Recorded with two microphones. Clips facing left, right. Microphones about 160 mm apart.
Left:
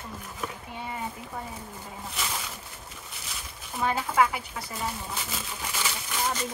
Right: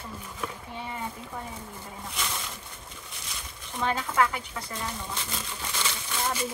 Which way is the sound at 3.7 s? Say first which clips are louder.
Left 1 dB; 10° left (ahead or behind).